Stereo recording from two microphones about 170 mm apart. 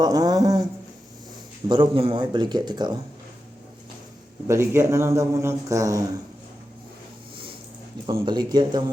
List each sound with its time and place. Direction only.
0.0 s speech: 20° right (ahead or behind)
4.4 s a man's voice: 15° right (ahead or behind)
8.0 s speech: 30° right (ahead or behind)